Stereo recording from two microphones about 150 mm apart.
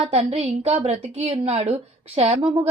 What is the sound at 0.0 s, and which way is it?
A woman's voice, 45° right (ahead or behind).